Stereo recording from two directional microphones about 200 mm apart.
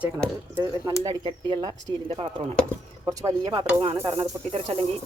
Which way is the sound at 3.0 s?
20° right (ahead or behind).